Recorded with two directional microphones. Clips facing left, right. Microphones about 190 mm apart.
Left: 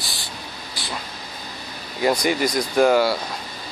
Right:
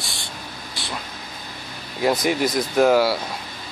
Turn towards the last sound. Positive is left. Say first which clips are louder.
# even
turn(degrees=-5)  # may be behind; listen again after turning